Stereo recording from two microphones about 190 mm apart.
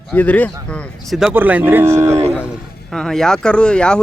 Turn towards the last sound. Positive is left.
turn(degrees=5)  # may be behind; listen again after turning